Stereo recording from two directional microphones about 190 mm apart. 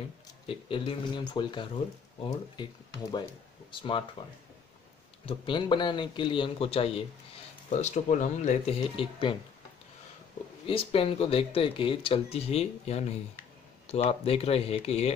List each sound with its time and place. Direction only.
0.5 s speech: 30° left (ahead or behind)
10.7 s speech: 30° left (ahead or behind)